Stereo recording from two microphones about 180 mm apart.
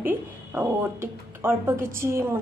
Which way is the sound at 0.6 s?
15° right (ahead or behind).